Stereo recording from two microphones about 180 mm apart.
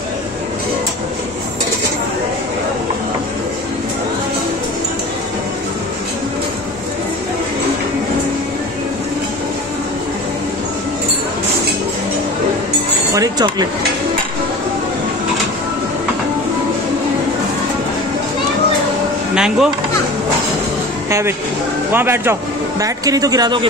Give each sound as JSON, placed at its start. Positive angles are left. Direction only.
{"t": 13.1, "sound": "a sound", "side_deg": -20}
{"t": 19.3, "sound": "speech", "side_deg": -5}
{"t": 21.1, "sound": "a man's voice", "side_deg": -15}